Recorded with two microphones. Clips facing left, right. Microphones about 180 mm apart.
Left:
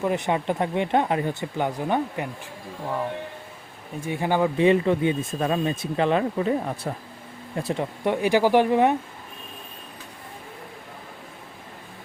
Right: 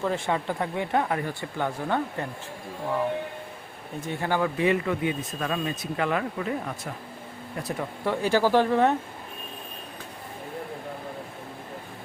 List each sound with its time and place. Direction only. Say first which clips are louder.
0.0 s speech: left 3 dB; 15° left (ahead or behind)
4.0 s speech: left 4 dB; 15° left (ahead or behind)